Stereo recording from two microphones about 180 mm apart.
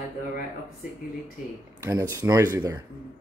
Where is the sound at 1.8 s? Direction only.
15° right (ahead or behind).